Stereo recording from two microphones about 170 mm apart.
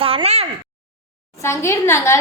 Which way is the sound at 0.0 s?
35° right (ahead or behind).